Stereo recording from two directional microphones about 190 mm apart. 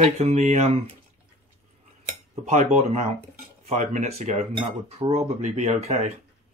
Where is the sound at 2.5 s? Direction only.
40° right (ahead or behind).